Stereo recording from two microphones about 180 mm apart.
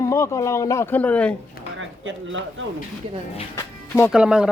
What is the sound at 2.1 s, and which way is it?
Speech, 90° right.